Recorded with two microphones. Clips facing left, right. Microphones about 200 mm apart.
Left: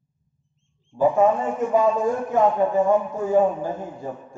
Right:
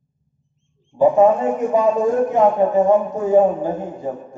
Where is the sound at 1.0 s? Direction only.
20° right (ahead or behind).